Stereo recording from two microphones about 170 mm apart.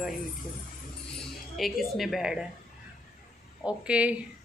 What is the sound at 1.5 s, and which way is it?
Speech, centre (ahead or behind).